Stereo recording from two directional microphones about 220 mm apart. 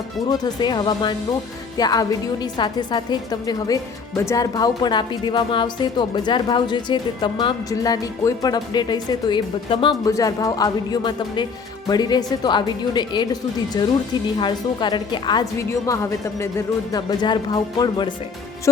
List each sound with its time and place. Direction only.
0.3 s a woman's voice: 20° left (ahead or behind)